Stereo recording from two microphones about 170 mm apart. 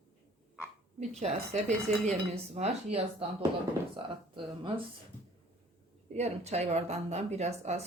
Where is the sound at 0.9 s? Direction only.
40° right (ahead or behind).